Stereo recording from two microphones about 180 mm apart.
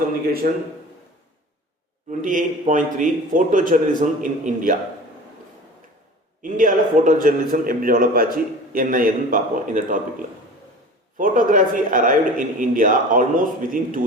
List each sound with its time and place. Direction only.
0.4 s a man's voice: 50° right (ahead or behind)
2.0 s a man's voice: 45° right (ahead or behind)
6.4 s a man's voice: 45° right (ahead or behind)
11.2 s a man's voice: 50° right (ahead or behind)